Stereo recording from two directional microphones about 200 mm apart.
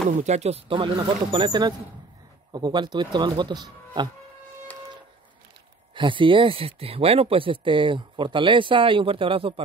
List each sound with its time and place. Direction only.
0.2 s speech: 35° right (ahead or behind)
5.9 s speech: 25° right (ahead or behind)